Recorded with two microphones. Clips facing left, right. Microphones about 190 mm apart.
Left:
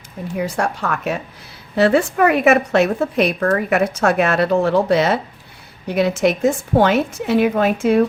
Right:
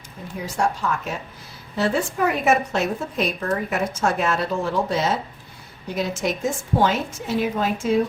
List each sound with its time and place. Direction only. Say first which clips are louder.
0.3 s a woman's voice: left 3 dB; 65° left (ahead or behind)